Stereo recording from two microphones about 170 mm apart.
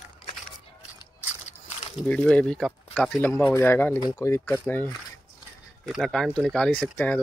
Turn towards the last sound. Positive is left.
turn(degrees=10)  # may be behind; listen again after turning